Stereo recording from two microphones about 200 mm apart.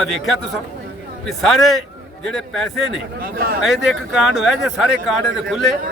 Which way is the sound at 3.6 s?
Centre (ahead or behind).